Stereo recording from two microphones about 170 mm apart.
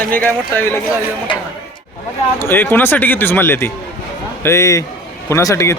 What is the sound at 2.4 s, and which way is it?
A man's voice, 10° left (ahead or behind).